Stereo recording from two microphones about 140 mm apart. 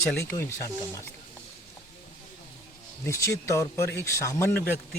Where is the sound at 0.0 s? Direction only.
15° left (ahead or behind).